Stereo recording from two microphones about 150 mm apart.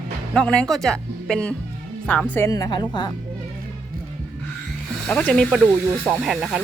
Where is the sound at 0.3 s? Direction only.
5° left (ahead or behind); by 3.1 s 30° left (ahead or behind).